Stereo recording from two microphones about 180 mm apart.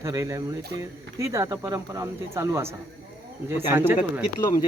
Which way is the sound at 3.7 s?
15° right (ahead or behind).